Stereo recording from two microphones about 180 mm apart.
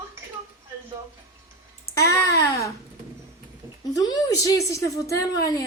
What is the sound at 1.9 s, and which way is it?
Speech, 15° left (ahead or behind).